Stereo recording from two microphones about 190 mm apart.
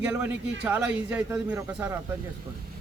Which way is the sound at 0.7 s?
5° right (ahead or behind).